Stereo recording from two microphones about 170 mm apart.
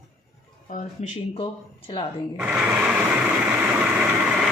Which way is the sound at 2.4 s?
5° right (ahead or behind).